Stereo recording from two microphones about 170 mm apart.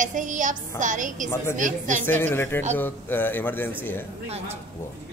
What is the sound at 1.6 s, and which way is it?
Speech, 50° right (ahead or behind).